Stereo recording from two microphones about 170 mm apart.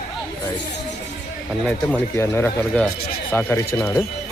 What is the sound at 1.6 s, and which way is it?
Speech, 5° left (ahead or behind).